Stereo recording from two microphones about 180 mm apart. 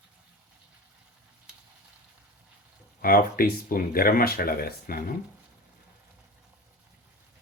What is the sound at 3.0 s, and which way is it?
Speech, 50° left (ahead or behind).